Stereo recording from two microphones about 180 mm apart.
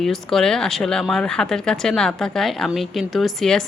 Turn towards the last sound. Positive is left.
turn(degrees=0)  # may be behind; listen again after turning